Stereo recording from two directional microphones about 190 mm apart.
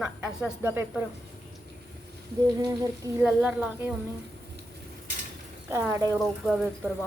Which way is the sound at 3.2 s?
5° right (ahead or behind).